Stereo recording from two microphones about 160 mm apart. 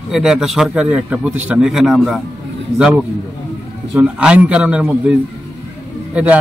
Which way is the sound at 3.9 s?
5° right (ahead or behind).